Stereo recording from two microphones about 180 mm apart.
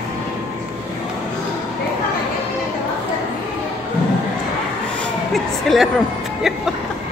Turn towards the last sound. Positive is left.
turn(degrees=0)  # may be behind; listen again after turning